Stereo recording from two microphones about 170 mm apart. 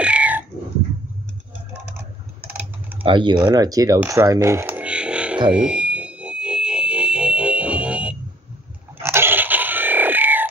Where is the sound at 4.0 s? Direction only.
20° right (ahead or behind).